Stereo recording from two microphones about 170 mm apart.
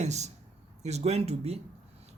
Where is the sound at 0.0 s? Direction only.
40° right (ahead or behind).